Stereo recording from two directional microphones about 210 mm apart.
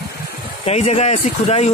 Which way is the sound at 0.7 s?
30° left (ahead or behind).